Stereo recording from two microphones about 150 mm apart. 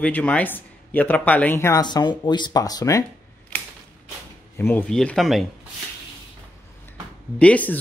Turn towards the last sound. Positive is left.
turn(degrees=10)  # may be behind; listen again after turning